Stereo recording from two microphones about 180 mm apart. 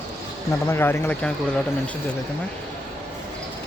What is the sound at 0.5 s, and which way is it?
Speech, 15° left (ahead or behind).